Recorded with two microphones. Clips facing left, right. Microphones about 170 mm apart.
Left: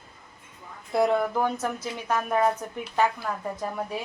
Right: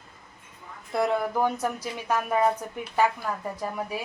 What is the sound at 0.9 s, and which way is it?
A woman's voice, centre (ahead or behind).